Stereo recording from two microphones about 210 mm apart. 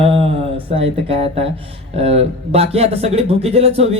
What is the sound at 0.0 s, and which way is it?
Speech, 25° right (ahead or behind).